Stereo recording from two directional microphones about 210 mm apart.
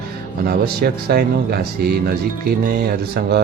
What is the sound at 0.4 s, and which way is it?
Speech, 45° right (ahead or behind).